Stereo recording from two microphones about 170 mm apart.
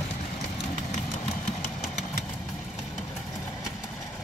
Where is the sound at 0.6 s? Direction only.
45° left (ahead or behind).